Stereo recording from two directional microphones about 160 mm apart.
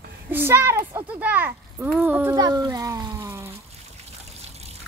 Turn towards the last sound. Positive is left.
turn(degrees=-15)  # may be behind; listen again after turning